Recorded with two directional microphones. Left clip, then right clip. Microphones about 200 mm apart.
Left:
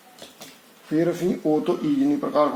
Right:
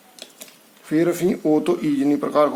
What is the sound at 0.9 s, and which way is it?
Speech, 25° right (ahead or behind).